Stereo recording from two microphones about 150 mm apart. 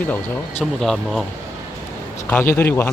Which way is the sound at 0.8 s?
Centre (ahead or behind).